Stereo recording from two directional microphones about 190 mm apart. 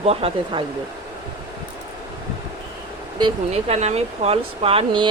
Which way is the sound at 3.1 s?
30° right (ahead or behind).